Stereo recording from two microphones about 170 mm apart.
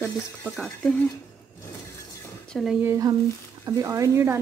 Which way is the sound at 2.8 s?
20° right (ahead or behind).